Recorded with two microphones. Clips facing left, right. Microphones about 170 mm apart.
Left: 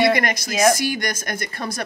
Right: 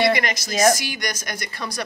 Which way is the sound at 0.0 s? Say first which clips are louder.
Left 2 dB; 55° left (ahead or behind).